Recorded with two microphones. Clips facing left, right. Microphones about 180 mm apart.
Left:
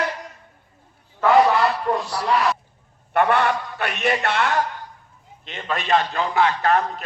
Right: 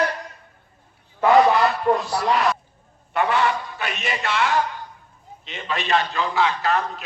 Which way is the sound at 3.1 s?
55° left (ahead or behind).